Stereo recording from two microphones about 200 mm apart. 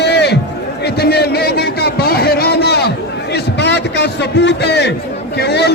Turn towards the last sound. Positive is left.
turn(degrees=55)  # may be behind; listen again after turning